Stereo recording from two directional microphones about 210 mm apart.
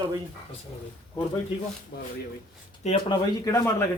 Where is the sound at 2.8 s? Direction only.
30° left (ahead or behind).